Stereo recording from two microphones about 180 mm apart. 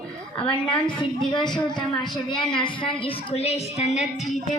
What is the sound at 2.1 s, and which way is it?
A woman's voice, 25° left (ahead or behind).